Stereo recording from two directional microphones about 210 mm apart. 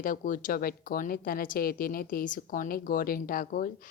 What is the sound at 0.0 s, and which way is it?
A woman's voice, 40° left (ahead or behind).